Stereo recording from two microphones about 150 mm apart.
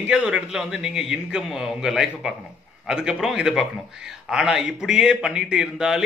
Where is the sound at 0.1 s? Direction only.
5° right (ahead or behind).